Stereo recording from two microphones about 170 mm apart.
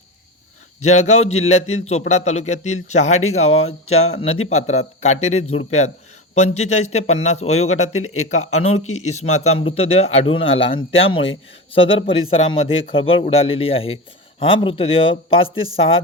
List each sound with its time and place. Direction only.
0.8 s a man's voice: 40° left (ahead or behind)